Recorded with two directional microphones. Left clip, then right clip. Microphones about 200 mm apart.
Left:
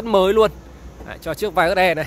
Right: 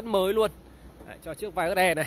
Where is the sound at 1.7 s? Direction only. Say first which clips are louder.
Left 3 dB; 15° right (ahead or behind).